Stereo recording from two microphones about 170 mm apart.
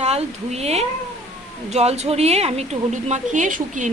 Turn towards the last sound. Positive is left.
turn(degrees=-50)  # may be behind; listen again after turning